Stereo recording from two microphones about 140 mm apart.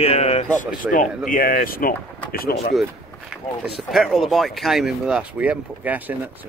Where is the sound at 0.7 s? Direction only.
70° left (ahead or behind); by 1.9 s 90° left.